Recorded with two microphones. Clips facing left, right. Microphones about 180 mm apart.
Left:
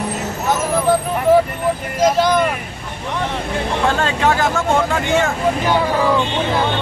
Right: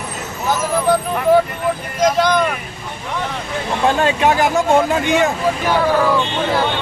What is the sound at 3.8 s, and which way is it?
Speech, 15° right (ahead or behind).